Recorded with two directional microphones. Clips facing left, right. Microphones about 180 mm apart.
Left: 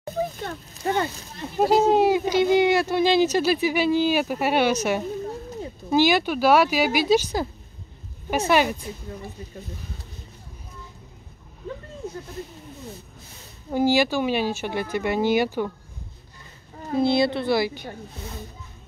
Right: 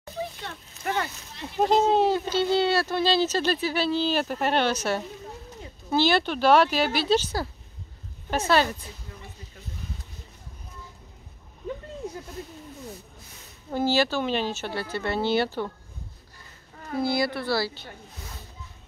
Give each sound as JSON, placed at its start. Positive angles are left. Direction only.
{"t": 0.0, "sound": "a sound", "side_deg": 50}
{"t": 0.8, "sound": "speech", "side_deg": 25}
{"t": 1.6, "sound": "speech", "side_deg": 10}
{"t": 12.0, "sound": "a sound", "side_deg": -15}
{"t": 13.7, "sound": "speech", "side_deg": 15}
{"t": 16.8, "sound": "speech", "side_deg": 25}